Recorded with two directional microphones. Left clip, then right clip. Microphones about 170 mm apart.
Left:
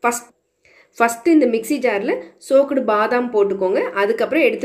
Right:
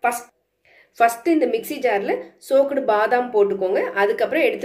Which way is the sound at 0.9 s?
70° left (ahead or behind).